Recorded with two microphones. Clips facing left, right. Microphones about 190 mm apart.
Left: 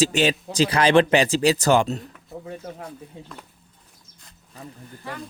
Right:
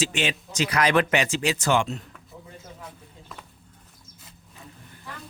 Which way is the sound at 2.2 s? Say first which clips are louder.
Left 9 dB; 65° left (ahead or behind).